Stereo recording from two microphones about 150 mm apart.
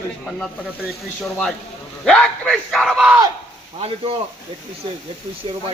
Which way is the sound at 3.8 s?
40° right (ahead or behind).